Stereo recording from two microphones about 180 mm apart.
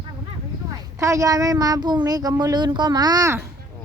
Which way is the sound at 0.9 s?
15° right (ahead or behind).